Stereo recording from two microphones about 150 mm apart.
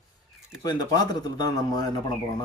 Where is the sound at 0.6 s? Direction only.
25° left (ahead or behind).